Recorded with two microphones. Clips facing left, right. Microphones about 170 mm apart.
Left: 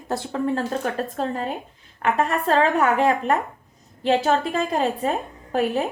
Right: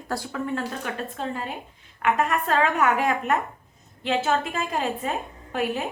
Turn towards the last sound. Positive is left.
turn(degrees=35)  # may be behind; listen again after turning